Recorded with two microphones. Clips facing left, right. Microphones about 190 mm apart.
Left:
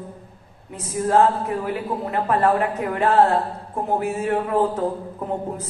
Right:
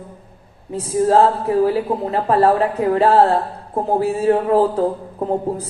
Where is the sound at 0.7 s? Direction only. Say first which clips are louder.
Right 5 dB; 35° right (ahead or behind).